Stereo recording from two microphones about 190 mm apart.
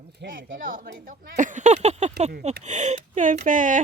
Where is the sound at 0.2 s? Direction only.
50° right (ahead or behind).